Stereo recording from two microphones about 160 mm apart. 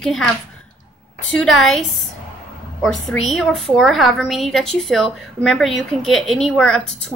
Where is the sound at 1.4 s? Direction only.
Centre (ahead or behind).